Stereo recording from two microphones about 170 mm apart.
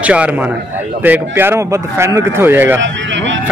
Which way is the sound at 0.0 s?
10° right (ahead or behind).